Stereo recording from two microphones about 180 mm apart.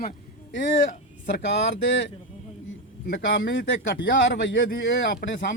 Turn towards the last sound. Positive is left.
turn(degrees=70)  # may be behind; listen again after turning